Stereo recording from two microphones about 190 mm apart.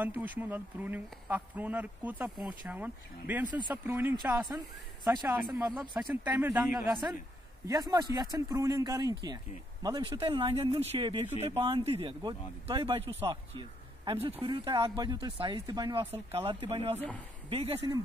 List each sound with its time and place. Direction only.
0.0 s speech: 10° right (ahead or behind)
5.0 s speech: 20° right (ahead or behind)
5.4 s speech: 10° right (ahead or behind)
7.6 s speech: 20° right (ahead or behind)